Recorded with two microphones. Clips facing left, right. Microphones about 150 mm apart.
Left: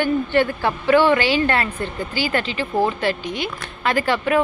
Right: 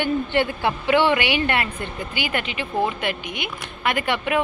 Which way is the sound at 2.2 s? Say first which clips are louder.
Left 4 dB; 35° left (ahead or behind).